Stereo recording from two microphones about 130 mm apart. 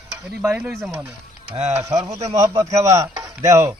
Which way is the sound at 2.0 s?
30° right (ahead or behind).